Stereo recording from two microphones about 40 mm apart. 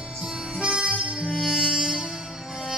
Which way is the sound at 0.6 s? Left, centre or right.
Right.